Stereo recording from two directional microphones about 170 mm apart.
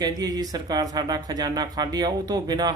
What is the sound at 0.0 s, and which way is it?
A man's voice, 20° right (ahead or behind).